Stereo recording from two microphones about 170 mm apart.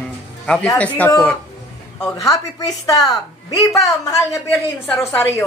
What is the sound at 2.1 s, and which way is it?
A woman's voice, 20° left (ahead or behind).